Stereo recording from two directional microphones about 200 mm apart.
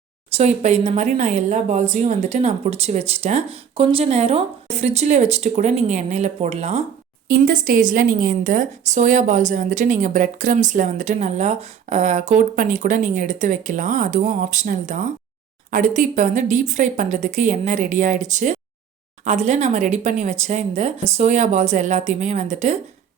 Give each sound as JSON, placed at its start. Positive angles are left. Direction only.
{"t": 0.3, "sound": "a woman's voice", "side_deg": -35}
{"t": 7.3, "sound": "a woman's voice", "side_deg": -45}